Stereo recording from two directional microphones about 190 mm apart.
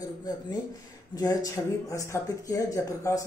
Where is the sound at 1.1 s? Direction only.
20° left (ahead or behind).